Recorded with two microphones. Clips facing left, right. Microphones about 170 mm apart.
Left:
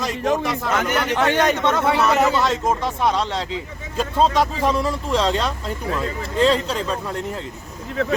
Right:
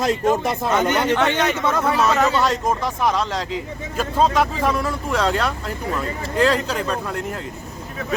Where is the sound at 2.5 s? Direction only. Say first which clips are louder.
Even; 25° left (ahead or behind).